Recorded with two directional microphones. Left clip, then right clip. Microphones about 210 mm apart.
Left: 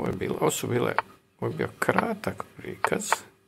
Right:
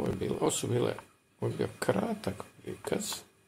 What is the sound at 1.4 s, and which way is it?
Speech, 15° left (ahead or behind).